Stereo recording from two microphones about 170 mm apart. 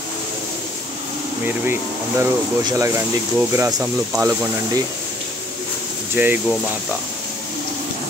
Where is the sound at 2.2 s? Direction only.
20° right (ahead or behind).